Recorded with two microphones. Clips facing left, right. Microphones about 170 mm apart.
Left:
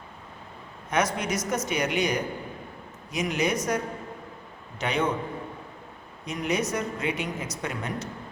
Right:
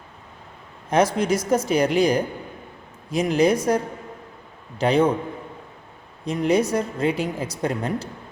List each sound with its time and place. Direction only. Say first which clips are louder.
0.9 s a woman's voice: right 7 dB; 30° right (ahead or behind)
4.8 s a woman's voice: right 8 dB; 30° right (ahead or behind)
6.2 s a woman's voice: right 8 dB; 30° right (ahead or behind)